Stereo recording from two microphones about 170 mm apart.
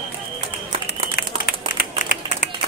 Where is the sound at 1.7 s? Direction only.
50° left (ahead or behind).